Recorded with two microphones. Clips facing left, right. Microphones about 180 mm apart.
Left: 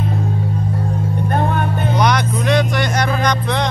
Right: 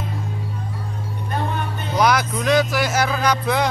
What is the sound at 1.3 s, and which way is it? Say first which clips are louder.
Music: left 5 dB; 55° left (ahead or behind).